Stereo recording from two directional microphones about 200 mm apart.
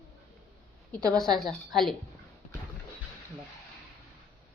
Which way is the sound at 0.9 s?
5° left (ahead or behind).